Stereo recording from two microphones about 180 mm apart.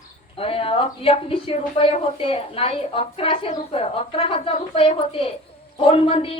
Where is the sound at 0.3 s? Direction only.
30° left (ahead or behind).